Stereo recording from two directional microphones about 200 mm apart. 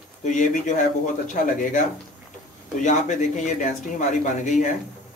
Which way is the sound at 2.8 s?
40° left (ahead or behind).